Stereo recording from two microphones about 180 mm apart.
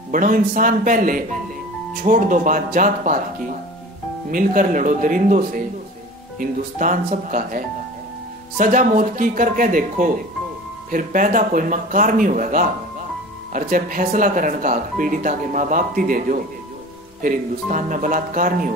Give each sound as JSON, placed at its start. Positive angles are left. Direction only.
{"t": 0.1, "sound": "speech", "side_deg": -50}
{"t": 4.3, "sound": "speech", "side_deg": -50}
{"t": 6.8, "sound": "speech", "side_deg": -45}